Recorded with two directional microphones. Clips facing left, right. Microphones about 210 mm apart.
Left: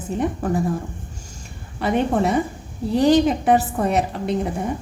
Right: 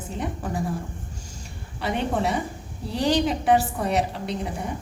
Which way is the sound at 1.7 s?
50° left (ahead or behind).